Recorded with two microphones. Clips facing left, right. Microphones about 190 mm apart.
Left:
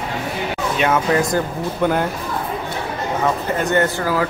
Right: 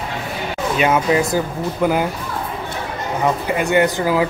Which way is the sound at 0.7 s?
5° right (ahead or behind).